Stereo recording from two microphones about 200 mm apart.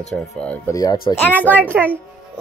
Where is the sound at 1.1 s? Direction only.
25° left (ahead or behind).